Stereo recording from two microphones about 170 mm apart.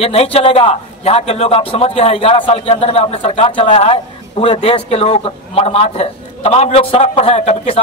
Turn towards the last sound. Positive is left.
turn(degrees=40)  # may be behind; listen again after turning